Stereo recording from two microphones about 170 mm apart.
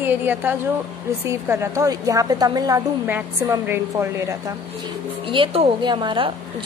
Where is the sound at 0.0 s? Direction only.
10° right (ahead or behind).